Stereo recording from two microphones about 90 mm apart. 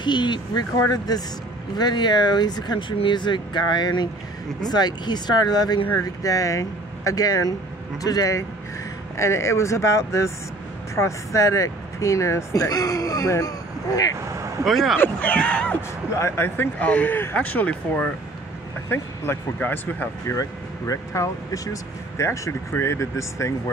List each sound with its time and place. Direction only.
0.0 s speech: 55° left (ahead or behind)
0.7 s speech: 45° left (ahead or behind)
14.6 s speech: centre (ahead or behind)
15.0 s speech: 20° left (ahead or behind)
16.2 s speech: 30° left (ahead or behind)
16.8 s speech: 15° left (ahead or behind)
18.9 s speech: 25° left (ahead or behind)
20.2 s speech: 35° left (ahead or behind)